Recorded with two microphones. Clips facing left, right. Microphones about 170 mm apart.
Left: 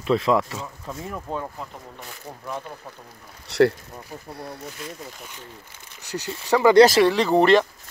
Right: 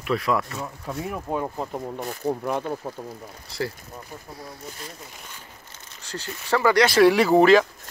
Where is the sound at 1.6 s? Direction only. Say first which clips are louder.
Right 8 dB; 45° right (ahead or behind).